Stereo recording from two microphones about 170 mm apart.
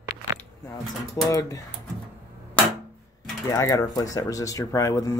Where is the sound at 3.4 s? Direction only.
20° left (ahead or behind).